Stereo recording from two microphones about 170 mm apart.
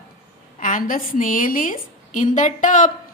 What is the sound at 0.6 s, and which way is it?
A woman's voice, 50° left (ahead or behind).